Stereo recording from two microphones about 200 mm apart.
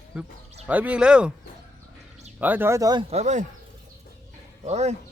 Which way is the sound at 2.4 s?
10° right (ahead or behind).